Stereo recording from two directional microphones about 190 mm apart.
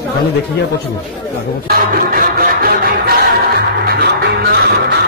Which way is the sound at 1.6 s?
50° right (ahead or behind).